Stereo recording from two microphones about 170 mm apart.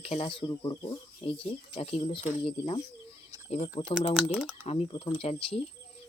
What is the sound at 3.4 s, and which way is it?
Speech, 40° left (ahead or behind).